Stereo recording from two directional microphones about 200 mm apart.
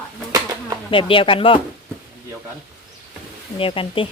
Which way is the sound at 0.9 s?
25° left (ahead or behind).